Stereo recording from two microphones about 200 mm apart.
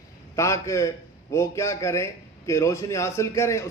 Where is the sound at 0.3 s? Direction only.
15° left (ahead or behind).